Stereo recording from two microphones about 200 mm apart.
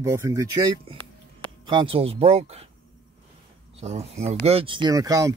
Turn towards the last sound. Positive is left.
turn(degrees=-15)  # may be behind; listen again after turning